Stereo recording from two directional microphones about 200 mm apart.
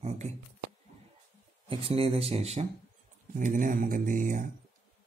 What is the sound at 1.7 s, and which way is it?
Speech, 30° right (ahead or behind).